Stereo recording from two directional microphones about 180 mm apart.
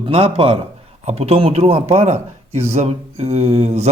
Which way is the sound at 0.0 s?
30° right (ahead or behind).